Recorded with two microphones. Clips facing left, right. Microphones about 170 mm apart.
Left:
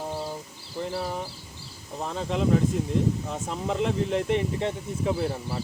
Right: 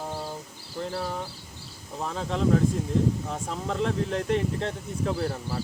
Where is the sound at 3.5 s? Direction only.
5° left (ahead or behind).